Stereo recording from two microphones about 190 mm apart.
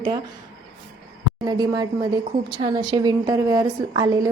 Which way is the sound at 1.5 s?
20° right (ahead or behind).